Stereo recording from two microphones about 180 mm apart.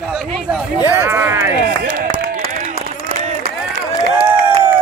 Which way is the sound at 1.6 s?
55° right (ahead or behind).